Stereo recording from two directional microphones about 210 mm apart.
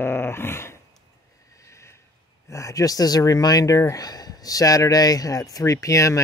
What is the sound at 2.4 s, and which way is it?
Speech, 15° left (ahead or behind).